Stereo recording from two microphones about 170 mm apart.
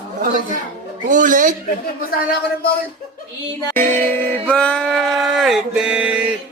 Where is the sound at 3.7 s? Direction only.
10° left (ahead or behind).